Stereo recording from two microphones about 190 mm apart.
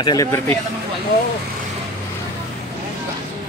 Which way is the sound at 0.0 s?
20° left (ahead or behind).